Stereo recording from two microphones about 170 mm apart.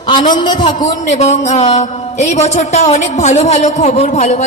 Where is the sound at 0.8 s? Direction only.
45° left (ahead or behind).